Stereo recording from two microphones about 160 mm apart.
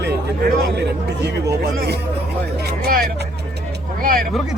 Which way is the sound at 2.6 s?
80° right.